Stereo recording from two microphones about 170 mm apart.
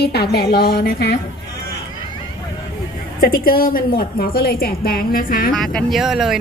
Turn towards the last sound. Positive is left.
turn(degrees=0)  # may be behind; listen again after turning